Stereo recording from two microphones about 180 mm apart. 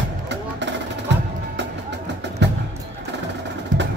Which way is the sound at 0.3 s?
80° right.